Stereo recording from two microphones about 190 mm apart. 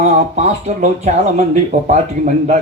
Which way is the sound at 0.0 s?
40° right (ahead or behind).